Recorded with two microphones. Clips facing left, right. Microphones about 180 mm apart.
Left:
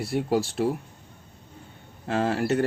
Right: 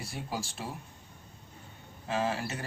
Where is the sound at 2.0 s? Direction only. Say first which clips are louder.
Left 7 dB; 60° left (ahead or behind).